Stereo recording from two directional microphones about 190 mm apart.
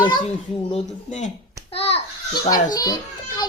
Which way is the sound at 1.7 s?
30° left (ahead or behind).